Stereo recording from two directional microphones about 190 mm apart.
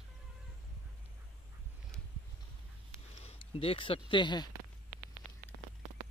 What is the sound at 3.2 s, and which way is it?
Speech, 30° left (ahead or behind).